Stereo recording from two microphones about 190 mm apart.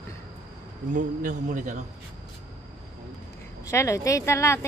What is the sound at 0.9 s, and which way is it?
Speech, 45° right (ahead or behind).